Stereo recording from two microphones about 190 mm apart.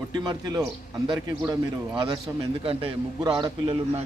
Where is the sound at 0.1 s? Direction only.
20° right (ahead or behind).